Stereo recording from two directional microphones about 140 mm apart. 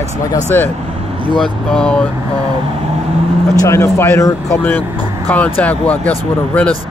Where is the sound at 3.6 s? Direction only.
20° left (ahead or behind).